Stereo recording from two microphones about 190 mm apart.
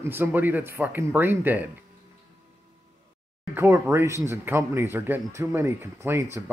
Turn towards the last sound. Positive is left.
turn(degrees=-15)  # may be behind; listen again after turning